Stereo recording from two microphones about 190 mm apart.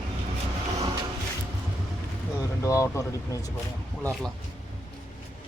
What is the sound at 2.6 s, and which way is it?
Speech, 15° left (ahead or behind).